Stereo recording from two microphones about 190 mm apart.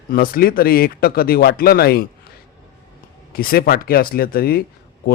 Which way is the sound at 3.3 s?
50° left (ahead or behind).